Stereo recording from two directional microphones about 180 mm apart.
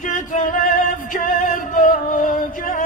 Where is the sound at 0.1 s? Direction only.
45° left (ahead or behind).